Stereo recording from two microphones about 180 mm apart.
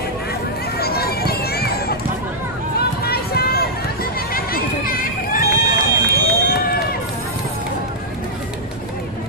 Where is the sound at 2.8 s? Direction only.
60° left (ahead or behind).